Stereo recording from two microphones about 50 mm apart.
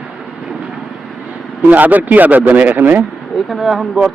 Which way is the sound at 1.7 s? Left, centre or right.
Right.